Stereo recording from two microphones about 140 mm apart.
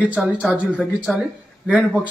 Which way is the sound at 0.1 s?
5° right (ahead or behind).